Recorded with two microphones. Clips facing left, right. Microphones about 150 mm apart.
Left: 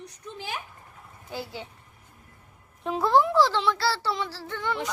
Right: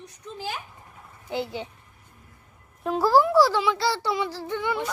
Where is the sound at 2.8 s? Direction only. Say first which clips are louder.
Right 2 dB; centre (ahead or behind).